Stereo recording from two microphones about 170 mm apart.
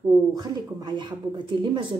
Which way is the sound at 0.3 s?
25° right (ahead or behind).